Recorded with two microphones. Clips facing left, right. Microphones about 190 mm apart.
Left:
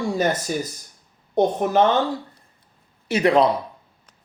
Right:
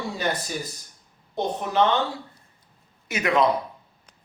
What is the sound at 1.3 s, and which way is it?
Speech, 50° left (ahead or behind).